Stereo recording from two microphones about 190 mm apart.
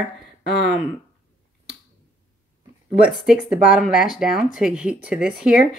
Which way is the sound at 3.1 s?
5° right (ahead or behind).